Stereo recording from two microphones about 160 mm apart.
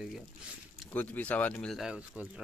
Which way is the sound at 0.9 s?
10° left (ahead or behind).